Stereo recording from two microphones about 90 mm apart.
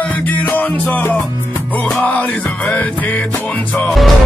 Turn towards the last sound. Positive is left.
turn(degrees=15)  # may be behind; listen again after turning